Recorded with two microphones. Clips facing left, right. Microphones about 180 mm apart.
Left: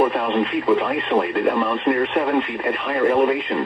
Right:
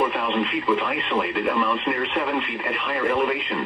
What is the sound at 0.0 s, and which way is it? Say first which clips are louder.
Speech: left 4 dB; 30° left (ahead or behind).